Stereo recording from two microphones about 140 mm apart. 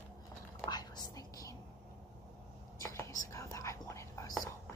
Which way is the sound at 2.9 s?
25° left (ahead or behind).